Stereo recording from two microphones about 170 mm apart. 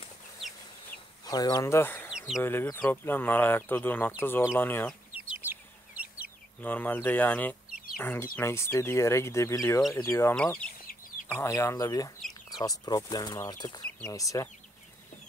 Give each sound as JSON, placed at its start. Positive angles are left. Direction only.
{"t": 1.2, "sound": "speech", "side_deg": 25}
{"t": 2.0, "sound": "a sound", "side_deg": 0}
{"t": 2.4, "sound": "speech", "side_deg": 10}
{"t": 5.1, "sound": "chicken", "side_deg": -10}
{"t": 6.6, "sound": "speech", "side_deg": 10}